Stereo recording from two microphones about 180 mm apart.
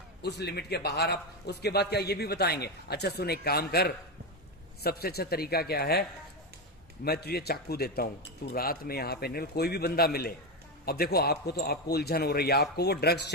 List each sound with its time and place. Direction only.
0.2 s a man's voice: 65° left (ahead or behind)